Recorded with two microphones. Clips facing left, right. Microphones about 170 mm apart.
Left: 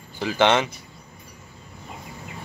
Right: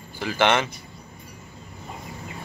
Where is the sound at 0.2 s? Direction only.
15° left (ahead or behind).